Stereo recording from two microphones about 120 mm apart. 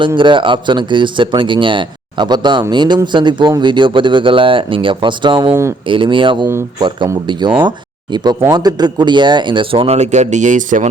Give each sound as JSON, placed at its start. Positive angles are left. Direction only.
{"t": 0.2, "sound": "speech", "side_deg": -45}
{"t": 5.5, "sound": "speech", "side_deg": -25}
{"t": 5.9, "sound": "speech", "side_deg": -45}
{"t": 8.1, "sound": "speech", "side_deg": -35}